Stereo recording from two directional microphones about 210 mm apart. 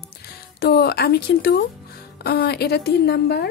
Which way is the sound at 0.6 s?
50° left (ahead or behind).